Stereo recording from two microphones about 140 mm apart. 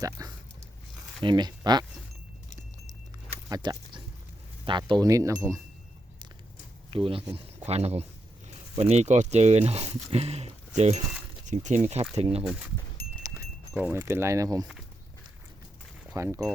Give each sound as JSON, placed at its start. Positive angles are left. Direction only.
{"t": 0.0, "sound": "speech", "side_deg": -25}
{"t": 3.5, "sound": "speech", "side_deg": -30}
{"t": 6.9, "sound": "speech", "side_deg": -40}
{"t": 13.9, "sound": "speech", "side_deg": -15}
{"t": 16.1, "sound": "speech", "side_deg": -20}